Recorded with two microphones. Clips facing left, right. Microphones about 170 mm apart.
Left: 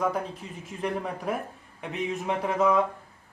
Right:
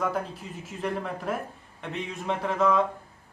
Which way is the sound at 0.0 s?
5° right (ahead or behind).